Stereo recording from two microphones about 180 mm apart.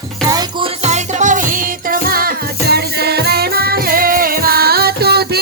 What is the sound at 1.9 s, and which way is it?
Music, 55° right (ahead or behind).